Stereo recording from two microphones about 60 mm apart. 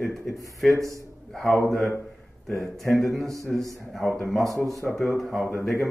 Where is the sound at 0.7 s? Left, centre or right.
Right.